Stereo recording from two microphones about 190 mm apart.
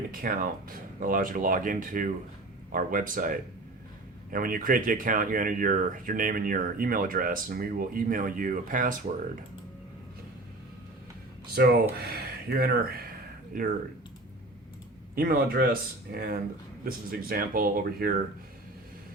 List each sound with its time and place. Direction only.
0.1 s speech: 45° right (ahead or behind)
11.5 s speech: 55° right (ahead or behind)
15.1 s speech: 50° right (ahead or behind)